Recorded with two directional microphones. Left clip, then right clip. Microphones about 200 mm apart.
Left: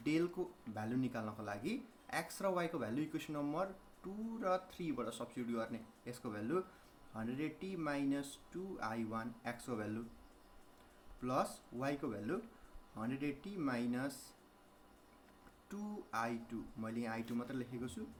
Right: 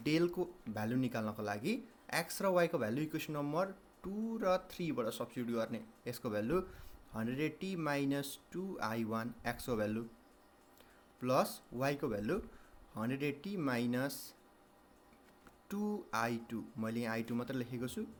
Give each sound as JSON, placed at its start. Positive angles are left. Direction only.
{"t": 0.0, "sound": "speech", "side_deg": -45}
{"t": 11.2, "sound": "speech", "side_deg": -45}
{"t": 15.7, "sound": "speech", "side_deg": -45}